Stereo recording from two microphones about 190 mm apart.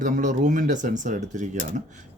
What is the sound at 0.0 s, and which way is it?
Speech, 40° right (ahead or behind).